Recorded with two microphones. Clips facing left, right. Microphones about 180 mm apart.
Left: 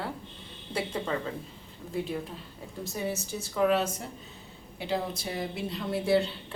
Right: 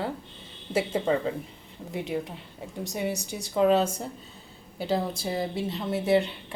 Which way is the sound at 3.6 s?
30° right (ahead or behind).